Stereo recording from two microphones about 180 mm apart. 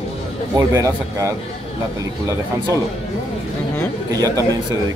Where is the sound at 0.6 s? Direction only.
15° right (ahead or behind).